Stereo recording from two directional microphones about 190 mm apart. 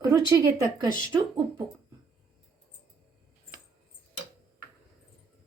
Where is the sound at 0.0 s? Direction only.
15° right (ahead or behind).